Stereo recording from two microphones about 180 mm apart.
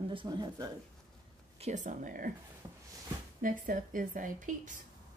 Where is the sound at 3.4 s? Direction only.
50° right (ahead or behind).